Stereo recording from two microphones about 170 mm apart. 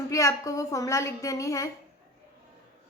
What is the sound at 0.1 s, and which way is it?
A woman's voice, 20° left (ahead or behind).